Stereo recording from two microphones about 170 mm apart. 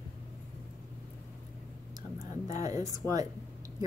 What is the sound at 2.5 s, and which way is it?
Speech, 20° right (ahead or behind).